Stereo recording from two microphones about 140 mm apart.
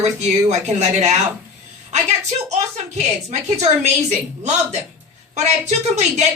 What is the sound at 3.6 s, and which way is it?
Speech, 55° right (ahead or behind).